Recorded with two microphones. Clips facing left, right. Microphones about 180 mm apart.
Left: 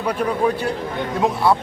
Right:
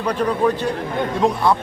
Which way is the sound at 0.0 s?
10° left (ahead or behind).